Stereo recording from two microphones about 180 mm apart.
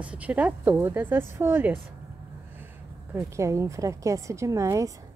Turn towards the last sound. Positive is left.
turn(degrees=-15)  # may be behind; listen again after turning